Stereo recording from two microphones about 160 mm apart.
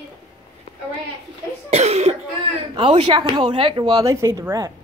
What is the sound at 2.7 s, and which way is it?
Speech, 30° right (ahead or behind).